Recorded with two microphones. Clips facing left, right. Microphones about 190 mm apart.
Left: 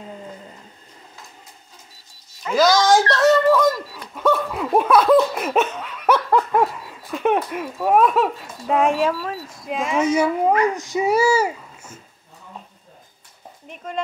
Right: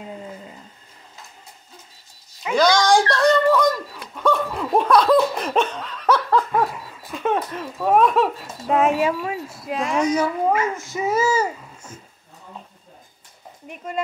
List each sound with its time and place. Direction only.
2.5 s a sound: 5° left (ahead or behind)
3.2 s laughter: 5° left (ahead or behind)
9.1 s speech: 15° right (ahead or behind); by 12.0 s 10° left (ahead or behind)
13.7 s speech: 5° right (ahead or behind)